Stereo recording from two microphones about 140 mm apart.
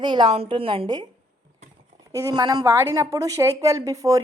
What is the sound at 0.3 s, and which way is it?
Speech, 45° right (ahead or behind).